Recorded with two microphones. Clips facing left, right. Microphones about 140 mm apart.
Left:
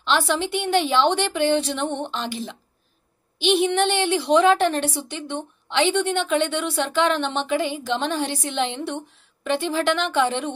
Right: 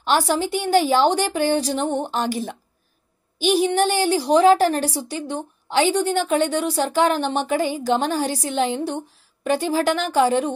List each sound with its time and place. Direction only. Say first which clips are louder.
0.0 s a woman's voice: right 2 dB; 40° right (ahead or behind)